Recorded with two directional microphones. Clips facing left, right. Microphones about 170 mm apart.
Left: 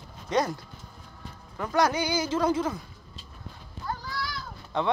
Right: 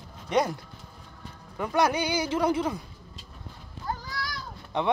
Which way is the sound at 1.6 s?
15° right (ahead or behind).